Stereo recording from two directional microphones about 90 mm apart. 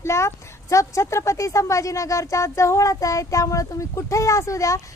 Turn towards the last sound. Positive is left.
turn(degrees=35)  # may be behind; listen again after turning